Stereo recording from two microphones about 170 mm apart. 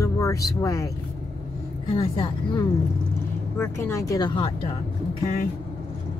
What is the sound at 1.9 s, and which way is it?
Speech, 30° left (ahead or behind).